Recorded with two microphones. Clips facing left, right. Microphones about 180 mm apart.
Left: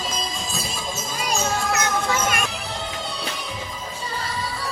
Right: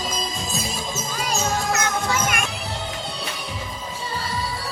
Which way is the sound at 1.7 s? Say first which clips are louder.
Even; 30° left (ahead or behind).